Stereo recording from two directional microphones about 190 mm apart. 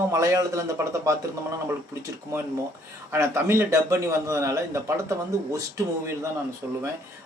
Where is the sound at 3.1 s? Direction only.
15° right (ahead or behind).